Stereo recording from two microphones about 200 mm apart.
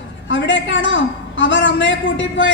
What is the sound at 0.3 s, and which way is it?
A woman's voice, 65° left (ahead or behind).